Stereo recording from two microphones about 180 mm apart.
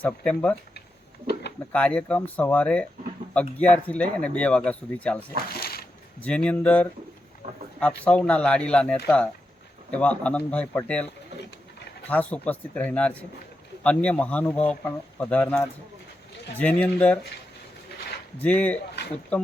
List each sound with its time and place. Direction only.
0.0 s speech: 5° left (ahead or behind)
1.7 s speech: 5° left (ahead or behind)
5.5 s a sound: 60° left (ahead or behind)
6.1 s speech: 5° left (ahead or behind)
7.4 s speech: 40° right (ahead or behind)
7.8 s speech: 5° left (ahead or behind)
12.0 s speech: 10° left (ahead or behind)
18.4 s speech: 10° left (ahead or behind)